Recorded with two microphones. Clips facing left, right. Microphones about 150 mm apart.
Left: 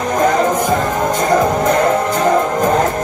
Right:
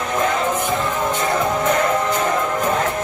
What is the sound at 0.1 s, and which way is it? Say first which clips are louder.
Music: left 6 dB; 40° left (ahead or behind).